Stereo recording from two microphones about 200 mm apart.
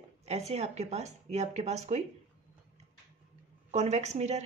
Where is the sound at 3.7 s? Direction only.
35° right (ahead or behind).